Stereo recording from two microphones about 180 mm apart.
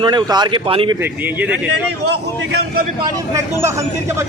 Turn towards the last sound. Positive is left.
turn(degrees=-15)  # may be behind; listen again after turning